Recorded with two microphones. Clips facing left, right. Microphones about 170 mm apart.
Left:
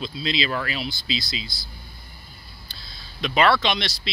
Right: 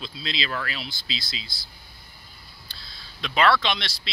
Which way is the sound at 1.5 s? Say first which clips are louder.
Left 4 dB; 25° right (ahead or behind).